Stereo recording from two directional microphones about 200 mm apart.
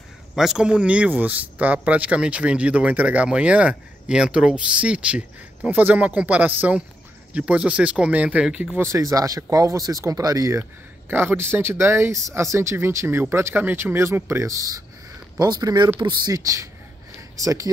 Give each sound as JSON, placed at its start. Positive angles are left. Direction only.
{"t": 0.4, "sound": "speech", "side_deg": -5}